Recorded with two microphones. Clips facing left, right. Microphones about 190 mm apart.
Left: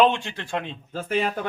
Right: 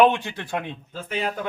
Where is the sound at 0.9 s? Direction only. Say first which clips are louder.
Left 4 dB; 50° left (ahead or behind).